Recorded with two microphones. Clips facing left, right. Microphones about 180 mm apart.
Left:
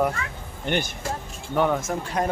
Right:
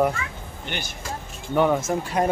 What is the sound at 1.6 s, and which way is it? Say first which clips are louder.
Speech: right 2 dB; centre (ahead or behind).